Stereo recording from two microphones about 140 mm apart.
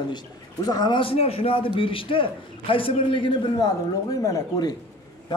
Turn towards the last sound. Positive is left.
turn(degrees=25)  # may be behind; listen again after turning